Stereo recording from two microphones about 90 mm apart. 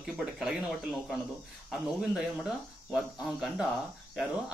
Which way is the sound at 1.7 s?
10° right (ahead or behind).